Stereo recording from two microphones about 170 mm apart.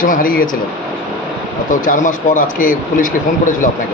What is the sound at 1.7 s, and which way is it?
Speech, 50° left (ahead or behind).